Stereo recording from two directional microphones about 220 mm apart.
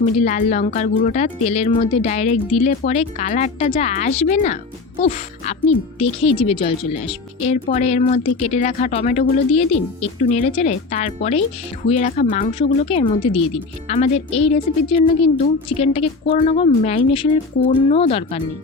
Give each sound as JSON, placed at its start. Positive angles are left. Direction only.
{"t": 0.0, "sound": "speech", "side_deg": 35}